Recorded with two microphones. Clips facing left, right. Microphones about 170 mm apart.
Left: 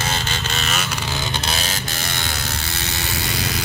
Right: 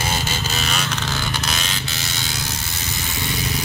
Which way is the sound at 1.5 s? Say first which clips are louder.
Left 1 dB; 35° left (ahead or behind).